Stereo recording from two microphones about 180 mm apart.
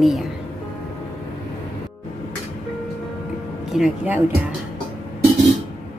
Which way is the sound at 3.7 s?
5° right (ahead or behind).